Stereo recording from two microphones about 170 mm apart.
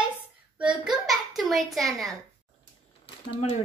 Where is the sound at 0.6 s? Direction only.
5° right (ahead or behind).